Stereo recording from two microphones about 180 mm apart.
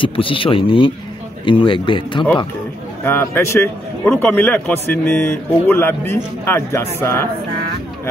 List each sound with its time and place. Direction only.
0.0 s speech: 30° left (ahead or behind)
3.1 s a man's voice: 10° left (ahead or behind)